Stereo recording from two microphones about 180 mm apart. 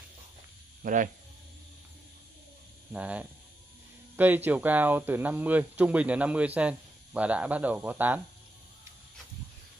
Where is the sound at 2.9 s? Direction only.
5° right (ahead or behind).